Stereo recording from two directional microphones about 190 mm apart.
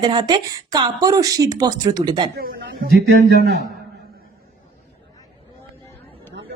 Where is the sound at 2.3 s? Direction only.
50° right (ahead or behind).